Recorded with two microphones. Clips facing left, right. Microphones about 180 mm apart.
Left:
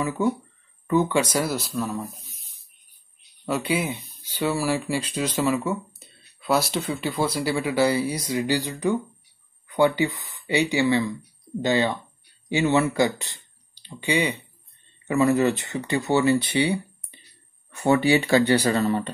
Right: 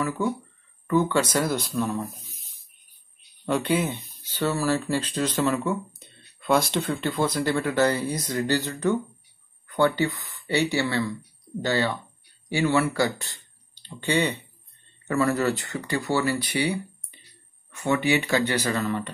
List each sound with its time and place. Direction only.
0.8 s speech: 15° left (ahead or behind); by 2.2 s centre (ahead or behind)
3.4 s speech: 10° left (ahead or behind); by 19.1 s 30° left (ahead or behind)